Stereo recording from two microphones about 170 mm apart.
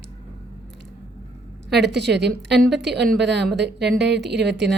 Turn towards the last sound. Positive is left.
turn(degrees=-90)